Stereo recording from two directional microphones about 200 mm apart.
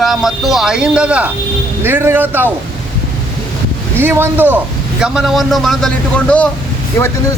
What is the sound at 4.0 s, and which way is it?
Speech, 10° right (ahead or behind).